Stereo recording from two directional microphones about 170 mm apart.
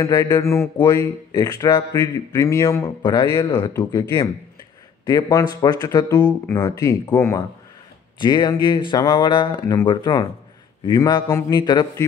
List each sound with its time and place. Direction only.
0.0 s speech: 20° left (ahead or behind)